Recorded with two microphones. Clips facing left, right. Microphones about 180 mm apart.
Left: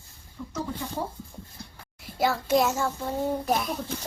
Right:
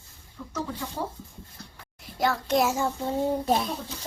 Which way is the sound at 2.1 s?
5° left (ahead or behind).